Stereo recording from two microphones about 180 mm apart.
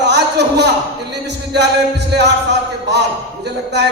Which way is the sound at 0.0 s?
70° right (ahead or behind).